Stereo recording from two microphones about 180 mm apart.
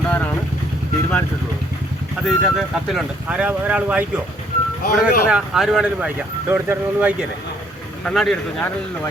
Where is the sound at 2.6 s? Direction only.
5° right (ahead or behind).